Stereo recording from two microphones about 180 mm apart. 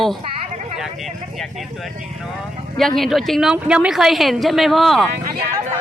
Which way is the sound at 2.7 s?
Centre (ahead or behind).